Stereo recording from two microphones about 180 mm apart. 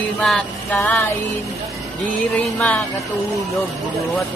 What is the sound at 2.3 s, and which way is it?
Music, 10° left (ahead or behind).